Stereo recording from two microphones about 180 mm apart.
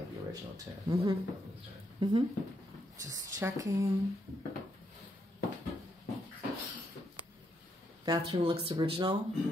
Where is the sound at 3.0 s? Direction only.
20° right (ahead or behind).